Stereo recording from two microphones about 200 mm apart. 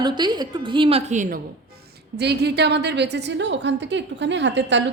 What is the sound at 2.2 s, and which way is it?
A woman's voice, 55° right (ahead or behind).